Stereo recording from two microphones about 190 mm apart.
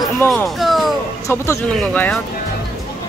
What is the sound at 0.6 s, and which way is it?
Music, centre (ahead or behind).